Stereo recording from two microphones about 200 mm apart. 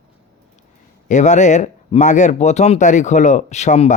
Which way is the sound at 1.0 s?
35° left (ahead or behind).